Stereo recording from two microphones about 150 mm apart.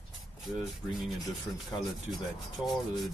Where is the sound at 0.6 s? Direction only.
Centre (ahead or behind).